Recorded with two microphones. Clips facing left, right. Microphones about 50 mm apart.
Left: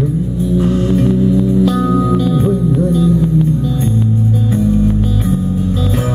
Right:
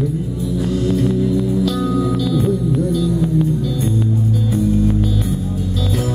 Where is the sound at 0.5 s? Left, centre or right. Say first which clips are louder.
Left 4 dB; left.